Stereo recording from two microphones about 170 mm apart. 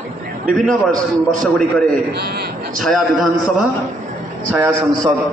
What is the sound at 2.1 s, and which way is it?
Speech, 70° right (ahead or behind).